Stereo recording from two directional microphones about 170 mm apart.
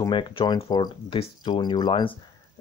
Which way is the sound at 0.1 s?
30° left (ahead or behind).